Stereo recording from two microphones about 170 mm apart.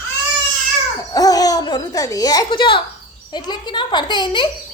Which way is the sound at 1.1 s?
20° left (ahead or behind).